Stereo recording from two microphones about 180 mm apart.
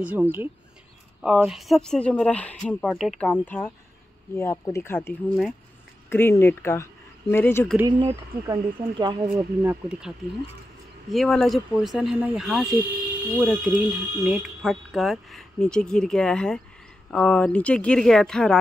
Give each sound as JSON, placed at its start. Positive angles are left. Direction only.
{"t": 0.0, "sound": "speech", "side_deg": -10}
{"t": 7.7, "sound": "speech", "side_deg": -15}
{"t": 9.6, "sound": "speech", "side_deg": -10}